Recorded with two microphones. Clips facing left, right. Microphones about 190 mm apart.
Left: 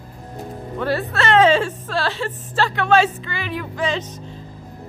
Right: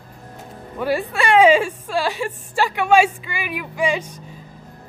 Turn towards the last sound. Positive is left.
turn(degrees=-10)  # may be behind; listen again after turning